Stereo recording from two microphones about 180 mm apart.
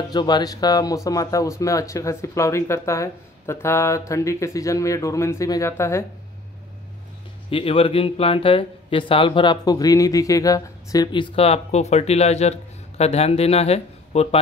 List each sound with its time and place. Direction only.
0.1 s speech: 25° left (ahead or behind)
7.4 s speech: 30° left (ahead or behind)